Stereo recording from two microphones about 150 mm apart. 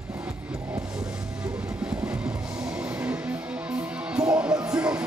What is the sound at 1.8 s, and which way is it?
Music, 10° right (ahead or behind).